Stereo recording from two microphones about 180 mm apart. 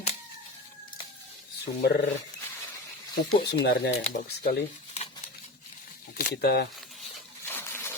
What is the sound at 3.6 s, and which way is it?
Speech, 65° left (ahead or behind).